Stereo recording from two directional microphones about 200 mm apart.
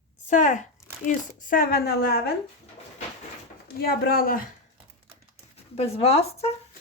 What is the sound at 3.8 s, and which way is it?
Speech, 50° left (ahead or behind).